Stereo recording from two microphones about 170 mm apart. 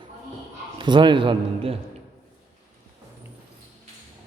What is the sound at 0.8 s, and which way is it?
A man's voice, 25° right (ahead or behind).